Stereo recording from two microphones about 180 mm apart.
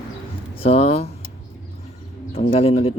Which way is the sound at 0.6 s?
35° left (ahead or behind).